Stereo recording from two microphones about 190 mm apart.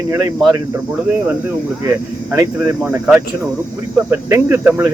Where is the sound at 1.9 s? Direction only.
15° right (ahead or behind).